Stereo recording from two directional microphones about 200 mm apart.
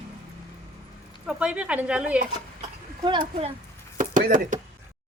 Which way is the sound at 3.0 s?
25° right (ahead or behind).